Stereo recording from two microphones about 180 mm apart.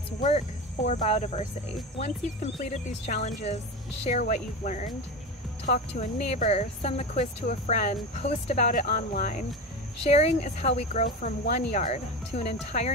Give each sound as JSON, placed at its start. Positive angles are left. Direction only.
{"t": 0.2, "sound": "speech", "side_deg": 40}